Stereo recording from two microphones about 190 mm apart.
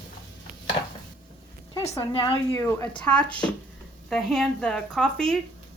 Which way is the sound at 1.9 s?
25° left (ahead or behind).